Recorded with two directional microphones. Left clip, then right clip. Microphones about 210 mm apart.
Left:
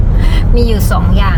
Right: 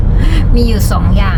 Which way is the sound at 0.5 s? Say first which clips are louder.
Left 2 dB; 5° right (ahead or behind).